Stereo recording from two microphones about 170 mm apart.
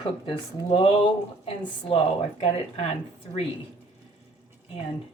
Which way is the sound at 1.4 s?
35° left (ahead or behind).